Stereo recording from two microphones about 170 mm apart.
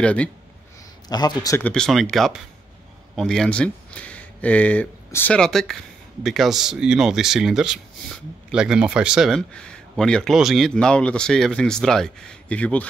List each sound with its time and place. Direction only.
0.0 s speech: 5° left (ahead or behind)
1.0 s a man's voice: 25° left (ahead or behind)
1.6 s speech: 5° left (ahead or behind)